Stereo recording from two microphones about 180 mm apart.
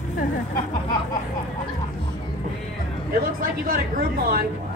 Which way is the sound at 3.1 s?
50° right (ahead or behind).